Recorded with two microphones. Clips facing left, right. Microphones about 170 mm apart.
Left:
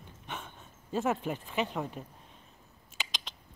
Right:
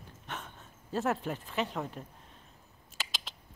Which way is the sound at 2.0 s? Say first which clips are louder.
Left 1 dB; centre (ahead or behind).